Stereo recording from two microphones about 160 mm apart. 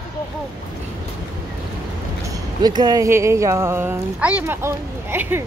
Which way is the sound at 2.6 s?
25° right (ahead or behind).